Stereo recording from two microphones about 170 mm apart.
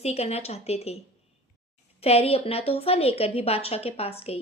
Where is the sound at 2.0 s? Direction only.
35° left (ahead or behind).